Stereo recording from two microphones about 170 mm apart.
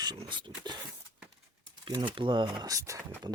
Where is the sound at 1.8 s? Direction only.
30° right (ahead or behind).